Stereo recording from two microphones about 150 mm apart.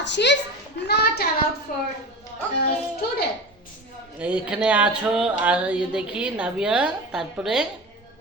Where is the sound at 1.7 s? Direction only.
80° left.